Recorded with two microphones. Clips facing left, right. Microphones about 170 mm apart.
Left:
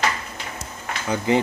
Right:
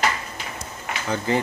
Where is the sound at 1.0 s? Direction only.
15° left (ahead or behind).